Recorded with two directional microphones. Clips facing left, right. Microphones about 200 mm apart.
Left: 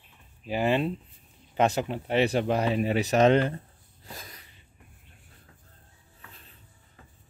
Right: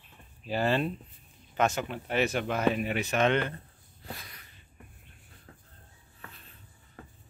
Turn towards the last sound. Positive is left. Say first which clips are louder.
# right 6 dB
turn(degrees=-60)  # may be behind; listen again after turning